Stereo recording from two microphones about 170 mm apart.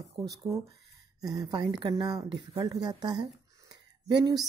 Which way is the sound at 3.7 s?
25° right (ahead or behind).